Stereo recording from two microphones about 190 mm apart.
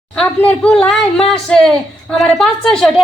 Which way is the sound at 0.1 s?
5° left (ahead or behind).